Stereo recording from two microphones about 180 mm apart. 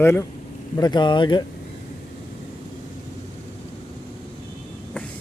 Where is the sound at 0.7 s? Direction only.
20° left (ahead or behind).